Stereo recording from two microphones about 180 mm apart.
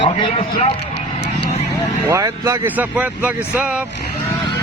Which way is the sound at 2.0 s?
20° right (ahead or behind).